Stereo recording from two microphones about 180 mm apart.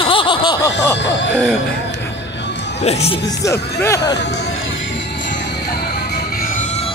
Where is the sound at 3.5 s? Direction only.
15° left (ahead or behind).